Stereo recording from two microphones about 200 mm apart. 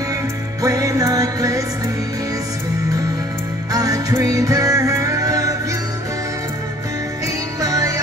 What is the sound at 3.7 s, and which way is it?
Music, 20° right (ahead or behind).